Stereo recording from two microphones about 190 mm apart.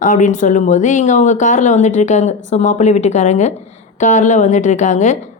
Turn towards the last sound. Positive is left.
turn(degrees=40)  # may be behind; listen again after turning